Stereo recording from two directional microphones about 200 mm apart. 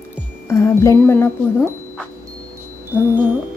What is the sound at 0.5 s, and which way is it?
Speech, 15° left (ahead or behind).